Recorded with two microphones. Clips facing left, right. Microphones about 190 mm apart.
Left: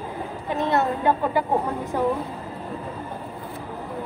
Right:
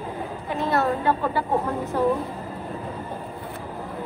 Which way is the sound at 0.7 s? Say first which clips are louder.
Even; 20° left (ahead or behind).